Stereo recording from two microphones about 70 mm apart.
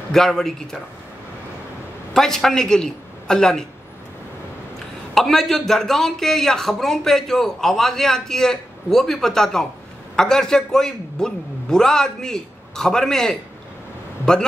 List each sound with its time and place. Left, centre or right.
0.1 s a man's voice: centre
2.1 s speech: centre
5.1 s a man's voice: centre